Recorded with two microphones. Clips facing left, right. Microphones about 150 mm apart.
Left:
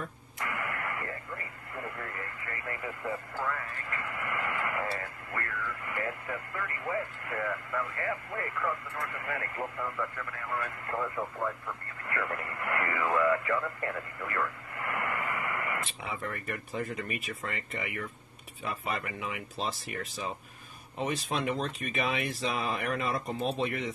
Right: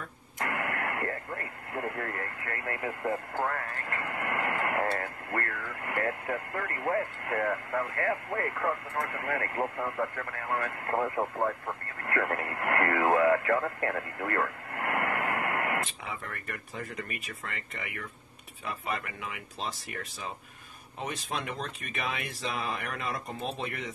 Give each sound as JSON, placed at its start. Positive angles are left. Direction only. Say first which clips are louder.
{"t": 0.4, "sound": "speech", "louder": "right 3 dB", "side_deg": -55}
{"t": 21.0, "sound": "speech", "louder": "left 4 dB", "side_deg": 0}